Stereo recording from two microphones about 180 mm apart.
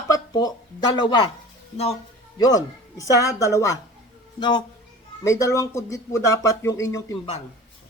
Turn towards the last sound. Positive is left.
turn(degrees=15)  # may be behind; listen again after turning